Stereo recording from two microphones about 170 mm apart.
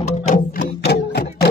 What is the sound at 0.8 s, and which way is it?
Music, 75° left (ahead or behind).